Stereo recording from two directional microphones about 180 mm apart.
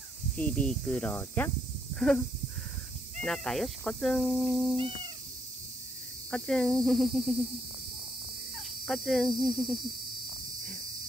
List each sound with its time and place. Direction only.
0.4 s speech: 5° left (ahead or behind)
2.0 s a sound: 5° left (ahead or behind)
3.3 s speech: centre (ahead or behind)
4.7 s cat: 30° right (ahead or behind)
6.3 s speech: 5° left (ahead or behind)
8.5 s cricket: centre (ahead or behind)